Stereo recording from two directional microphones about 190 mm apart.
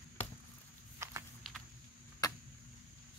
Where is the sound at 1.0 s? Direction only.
15° right (ahead or behind).